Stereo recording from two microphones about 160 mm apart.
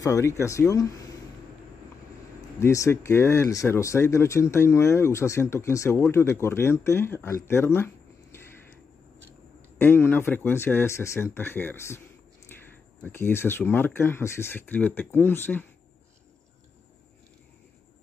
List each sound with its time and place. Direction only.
0.0 s speech: 20° left (ahead or behind)
2.6 s speech: 20° left (ahead or behind)
9.8 s speech: 15° left (ahead or behind)
13.0 s speech: 15° left (ahead or behind)